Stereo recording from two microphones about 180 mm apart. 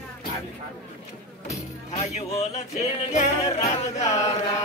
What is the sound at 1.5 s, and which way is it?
Music, 40° left (ahead or behind).